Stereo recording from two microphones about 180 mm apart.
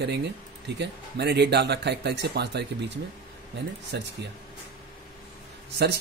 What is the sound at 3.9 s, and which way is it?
Speech, 70° right (ahead or behind).